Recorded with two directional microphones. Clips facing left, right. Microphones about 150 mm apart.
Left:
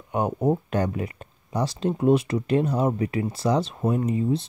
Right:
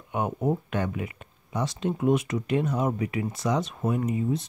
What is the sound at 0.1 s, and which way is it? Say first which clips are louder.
Speech: left 4 dB; 35° left (ahead or behind).